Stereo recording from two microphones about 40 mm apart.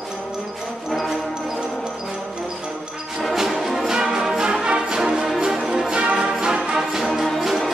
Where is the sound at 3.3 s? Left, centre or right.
Centre.